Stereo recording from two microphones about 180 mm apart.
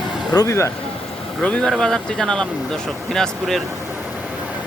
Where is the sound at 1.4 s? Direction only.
5° left (ahead or behind).